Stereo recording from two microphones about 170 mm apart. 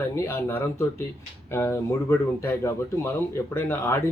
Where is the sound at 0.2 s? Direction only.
15° left (ahead or behind).